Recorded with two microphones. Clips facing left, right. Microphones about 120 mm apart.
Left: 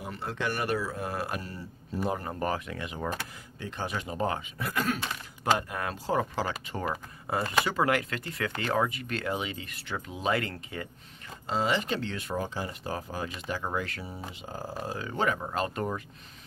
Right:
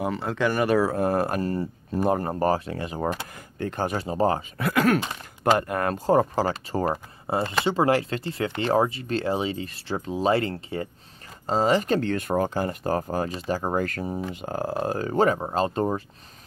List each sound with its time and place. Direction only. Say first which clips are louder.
0.9 s speech: right 10 dB; 45° right (ahead or behind)
3.5 s speech: right 8 dB; 50° right (ahead or behind)
4.0 s speech: right 8 dB; 35° right (ahead or behind)
4.6 s speech: right 9 dB; 80° right
5.4 s speech: right 6 dB; 55° right (ahead or behind)
15.0 s speech: right 7 dB; 40° right (ahead or behind)